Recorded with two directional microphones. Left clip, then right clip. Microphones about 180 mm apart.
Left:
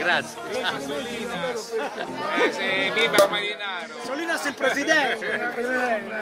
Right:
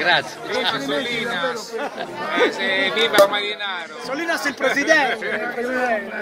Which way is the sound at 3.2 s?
5° right (ahead or behind).